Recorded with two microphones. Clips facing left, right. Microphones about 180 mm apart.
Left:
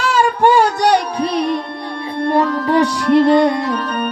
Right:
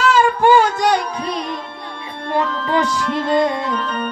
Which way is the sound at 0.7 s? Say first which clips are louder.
Left 3 dB; 70° left (ahead or behind).